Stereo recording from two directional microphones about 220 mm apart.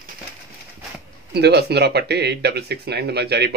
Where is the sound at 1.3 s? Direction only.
50° right (ahead or behind).